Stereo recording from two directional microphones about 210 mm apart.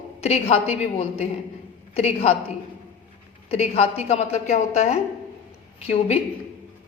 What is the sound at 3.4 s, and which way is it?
A woman's voice, 30° left (ahead or behind).